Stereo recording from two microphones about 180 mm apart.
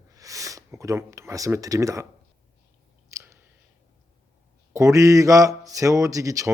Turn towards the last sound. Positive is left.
turn(degrees=-15)  # may be behind; listen again after turning